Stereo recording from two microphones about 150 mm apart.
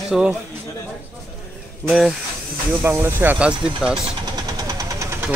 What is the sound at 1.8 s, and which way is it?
Speech, centre (ahead or behind).